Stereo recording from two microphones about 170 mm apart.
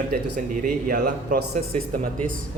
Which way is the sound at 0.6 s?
60° right (ahead or behind).